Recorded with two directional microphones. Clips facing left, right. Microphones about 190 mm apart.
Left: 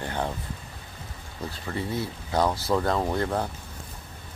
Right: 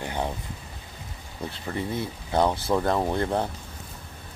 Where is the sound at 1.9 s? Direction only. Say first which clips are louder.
Even; 20° right (ahead or behind).